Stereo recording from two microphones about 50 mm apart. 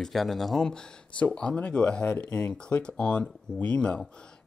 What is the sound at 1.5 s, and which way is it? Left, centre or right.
Speech, left.